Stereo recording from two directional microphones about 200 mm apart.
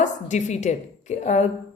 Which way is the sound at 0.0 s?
35° left (ahead or behind).